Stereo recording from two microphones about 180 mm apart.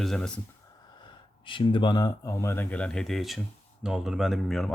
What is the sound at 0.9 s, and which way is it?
Speech, 25° left (ahead or behind).